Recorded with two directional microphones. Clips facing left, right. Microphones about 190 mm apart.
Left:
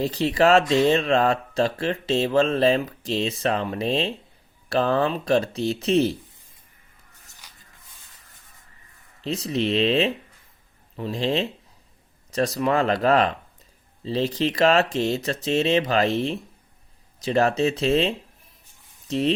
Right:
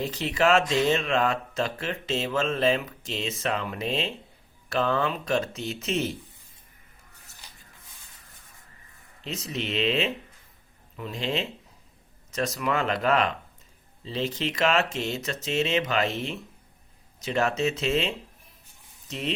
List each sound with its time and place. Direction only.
0.0 s speech: 35° left (ahead or behind)
9.2 s speech: 35° left (ahead or behind)